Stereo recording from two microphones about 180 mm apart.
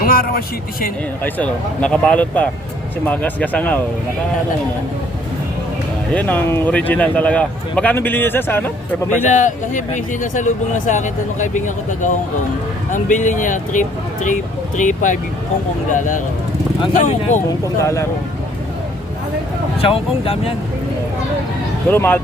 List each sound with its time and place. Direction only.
0.0 s speech: 55° left (ahead or behind)
1.2 s speech: 5° left (ahead or behind)
6.1 s speech: 10° left (ahead or behind)
9.3 s speech: 45° left (ahead or behind)
17.7 s speech: 15° left (ahead or behind)
19.8 s speech: 30° left (ahead or behind)
21.8 s speech: 10° left (ahead or behind)